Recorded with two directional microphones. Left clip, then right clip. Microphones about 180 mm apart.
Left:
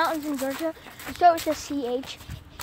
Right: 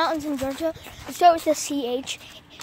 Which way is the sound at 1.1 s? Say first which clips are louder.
Right 2 dB; 35° right (ahead or behind).